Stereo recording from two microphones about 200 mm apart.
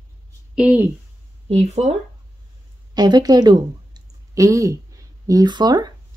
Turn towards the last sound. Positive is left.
turn(degrees=-20)  # may be behind; listen again after turning